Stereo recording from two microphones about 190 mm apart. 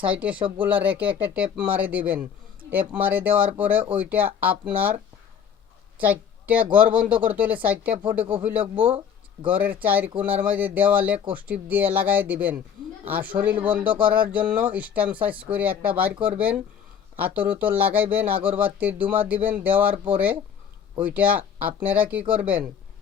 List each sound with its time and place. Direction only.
0.0 s speech: 5° right (ahead or behind)
0.3 s speech: 25° right (ahead or behind)
0.6 s speech: 10° right (ahead or behind)
6.0 s speech: 10° right (ahead or behind)
17.2 s speech: 10° right (ahead or behind)